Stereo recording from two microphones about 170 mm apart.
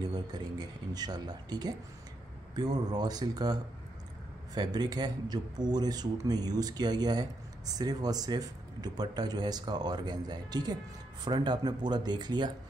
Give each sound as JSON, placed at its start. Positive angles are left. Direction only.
{"t": 0.0, "sound": "speech", "side_deg": -25}